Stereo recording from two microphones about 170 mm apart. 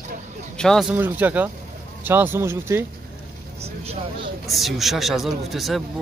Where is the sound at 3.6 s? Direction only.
35° right (ahead or behind).